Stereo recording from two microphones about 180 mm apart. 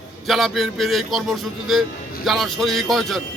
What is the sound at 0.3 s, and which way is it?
Speech, centre (ahead or behind).